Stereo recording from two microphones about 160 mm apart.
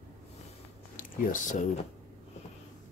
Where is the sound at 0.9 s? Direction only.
55° left (ahead or behind).